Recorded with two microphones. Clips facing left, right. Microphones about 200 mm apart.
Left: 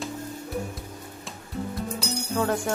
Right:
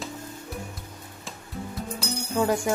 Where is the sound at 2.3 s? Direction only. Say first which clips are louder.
Right 2 dB; 10° right (ahead or behind).